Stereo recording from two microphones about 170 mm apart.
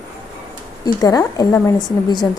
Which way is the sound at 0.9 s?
20° left (ahead or behind).